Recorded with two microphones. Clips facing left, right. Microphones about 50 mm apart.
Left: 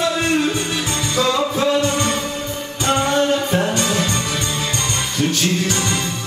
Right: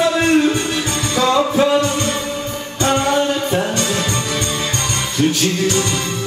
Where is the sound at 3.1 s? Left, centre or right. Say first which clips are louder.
Even; centre.